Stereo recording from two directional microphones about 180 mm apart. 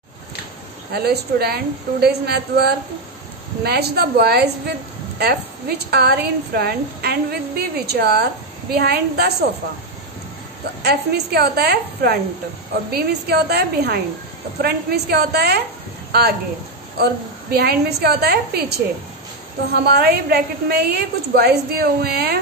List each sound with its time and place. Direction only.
0.9 s a woman's voice: 65° right (ahead or behind)
10.8 s a woman's voice: 65° right (ahead or behind)